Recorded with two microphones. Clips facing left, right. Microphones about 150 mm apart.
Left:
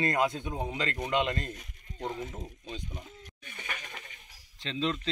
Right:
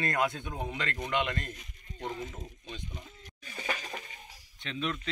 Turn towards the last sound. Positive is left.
turn(degrees=30)  # may be behind; listen again after turning